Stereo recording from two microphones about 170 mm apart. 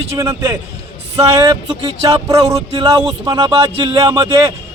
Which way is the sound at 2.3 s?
35° right (ahead or behind).